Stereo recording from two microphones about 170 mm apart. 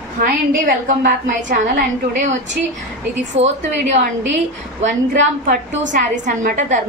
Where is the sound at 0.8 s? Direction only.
55° right (ahead or behind).